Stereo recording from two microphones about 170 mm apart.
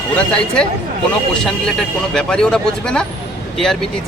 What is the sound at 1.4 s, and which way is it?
A man's voice, 5° left (ahead or behind).